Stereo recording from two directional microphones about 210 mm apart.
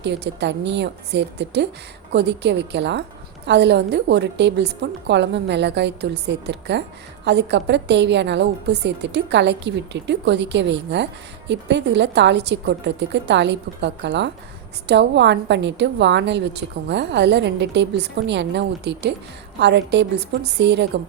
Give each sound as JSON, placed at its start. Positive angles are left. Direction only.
{"t": 0.0, "sound": "a woman's voice", "side_deg": -55}